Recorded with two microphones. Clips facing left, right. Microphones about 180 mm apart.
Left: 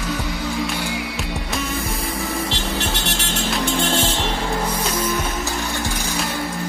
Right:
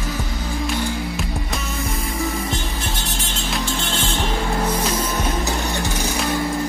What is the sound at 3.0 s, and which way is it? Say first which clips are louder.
Music: left 3 dB; 70° left (ahead or behind).